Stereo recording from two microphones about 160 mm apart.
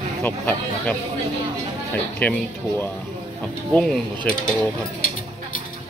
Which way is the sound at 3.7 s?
5° left (ahead or behind).